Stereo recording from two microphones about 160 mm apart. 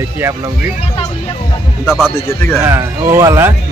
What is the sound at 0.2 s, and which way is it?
Speech, 20° right (ahead or behind).